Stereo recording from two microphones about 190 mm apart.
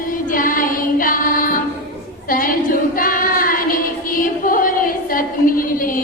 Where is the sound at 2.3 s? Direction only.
50° left (ahead or behind).